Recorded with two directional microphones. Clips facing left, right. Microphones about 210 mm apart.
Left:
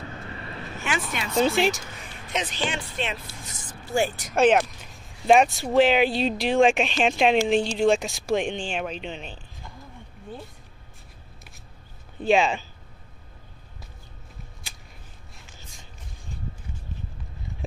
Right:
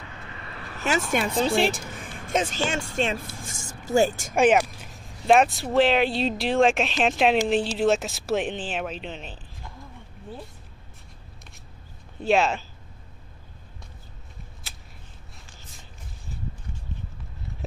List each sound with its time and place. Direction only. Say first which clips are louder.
0.0 s vehicle: left 4 dB; 35° left (ahead or behind)
0.7 s speech: right 5 dB; 40° right (ahead or behind)
1.3 s speech: left 5 dB; centre (ahead or behind)
1.7 s speech: left 3 dB; 50° right (ahead or behind)
4.4 s speech: even; 10° right (ahead or behind)
12.2 s speech: left 1 dB; centre (ahead or behind)
17.5 s a sound: left 1 dB; centre (ahead or behind)